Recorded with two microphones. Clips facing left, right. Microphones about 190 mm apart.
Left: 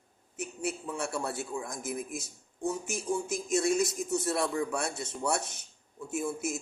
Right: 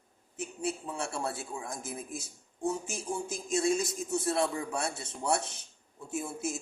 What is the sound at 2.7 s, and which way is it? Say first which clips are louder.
Speech: left 2 dB; 30° right (ahead or behind).